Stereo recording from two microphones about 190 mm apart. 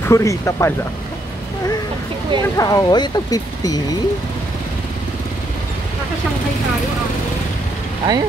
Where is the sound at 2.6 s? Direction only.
20° left (ahead or behind).